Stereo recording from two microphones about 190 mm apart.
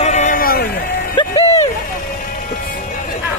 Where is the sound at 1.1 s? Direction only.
30° left (ahead or behind).